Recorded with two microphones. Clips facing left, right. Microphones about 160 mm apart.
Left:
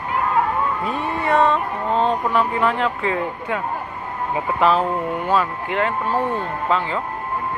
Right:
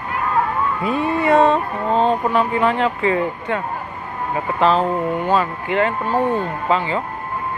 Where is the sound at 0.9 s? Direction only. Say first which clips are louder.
Right 8 dB; 20° right (ahead or behind).